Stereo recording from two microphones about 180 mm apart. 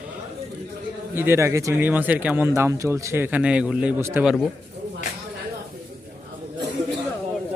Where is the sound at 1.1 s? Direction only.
15° right (ahead or behind).